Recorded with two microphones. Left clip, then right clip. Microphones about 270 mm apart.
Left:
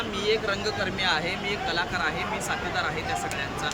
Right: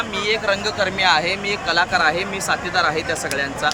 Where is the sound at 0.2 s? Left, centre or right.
Centre.